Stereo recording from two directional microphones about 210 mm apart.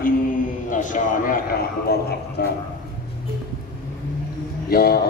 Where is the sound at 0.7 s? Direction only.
40° left (ahead or behind).